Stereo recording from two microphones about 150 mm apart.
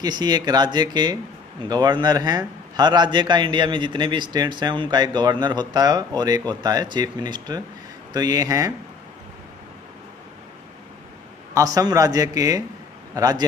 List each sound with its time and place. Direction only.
0.0 s a man's voice: 25° right (ahead or behind)
11.5 s a man's voice: 20° right (ahead or behind)